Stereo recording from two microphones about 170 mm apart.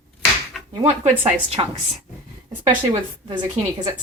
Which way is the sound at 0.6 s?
Centre (ahead or behind).